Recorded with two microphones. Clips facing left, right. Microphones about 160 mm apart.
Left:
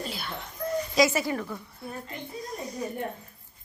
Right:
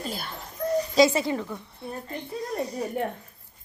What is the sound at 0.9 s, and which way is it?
Speech, 25° right (ahead or behind).